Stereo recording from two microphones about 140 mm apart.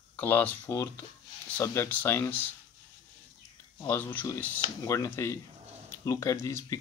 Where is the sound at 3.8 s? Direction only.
15° left (ahead or behind).